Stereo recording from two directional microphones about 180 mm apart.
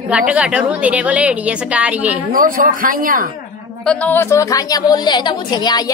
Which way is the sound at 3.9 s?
10° left (ahead or behind).